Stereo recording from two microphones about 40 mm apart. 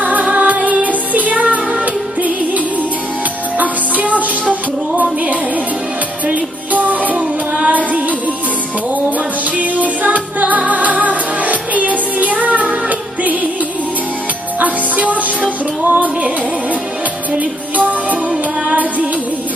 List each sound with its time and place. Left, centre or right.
0.0 s music: right
0.8 s music: right
3.5 s music: right
6.2 s music: right
9.6 s music: right
14.6 s music: right
17.4 s music: right